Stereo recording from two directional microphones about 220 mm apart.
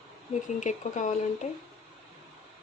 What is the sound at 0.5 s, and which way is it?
Speech, 35° left (ahead or behind).